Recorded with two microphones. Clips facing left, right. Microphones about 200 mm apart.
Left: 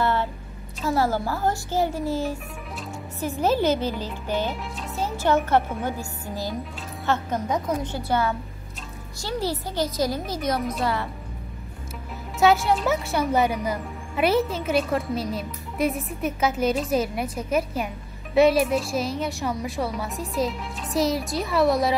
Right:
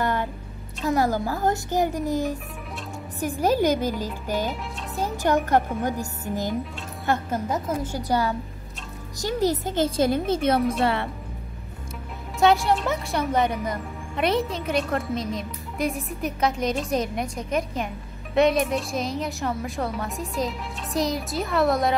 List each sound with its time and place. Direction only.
0.0 s a sound: 15° right (ahead or behind)
1.3 s a woman's voice: 15° right (ahead or behind)
4.9 s music: 15° right (ahead or behind)
5.9 s a woman's voice: 20° right (ahead or behind)
7.1 s a woman's voice: 5° right (ahead or behind)
9.2 s speech: 20° right (ahead or behind)
10.6 s a woman's voice: centre (ahead or behind)
12.4 s a woman's voice: centre (ahead or behind)